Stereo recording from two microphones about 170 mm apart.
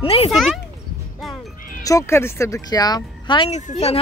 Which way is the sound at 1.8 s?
15° left (ahead or behind).